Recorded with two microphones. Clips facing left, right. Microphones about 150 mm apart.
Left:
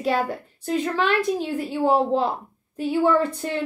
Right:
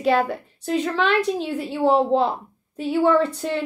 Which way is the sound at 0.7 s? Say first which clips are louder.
Right 1 dB; 10° left (ahead or behind).